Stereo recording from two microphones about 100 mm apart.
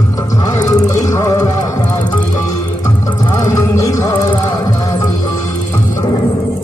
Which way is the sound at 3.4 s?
30° left (ahead or behind).